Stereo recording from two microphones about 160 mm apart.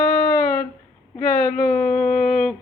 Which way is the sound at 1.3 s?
55° left (ahead or behind).